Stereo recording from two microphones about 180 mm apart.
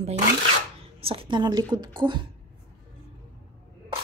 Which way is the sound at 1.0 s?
30° right (ahead or behind).